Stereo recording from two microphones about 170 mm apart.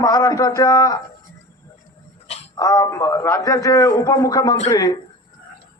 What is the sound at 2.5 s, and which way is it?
A man's voice, 20° left (ahead or behind).